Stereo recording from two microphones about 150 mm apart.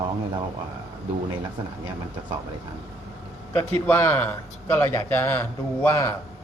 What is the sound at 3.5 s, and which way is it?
A man's voice, 20° left (ahead or behind).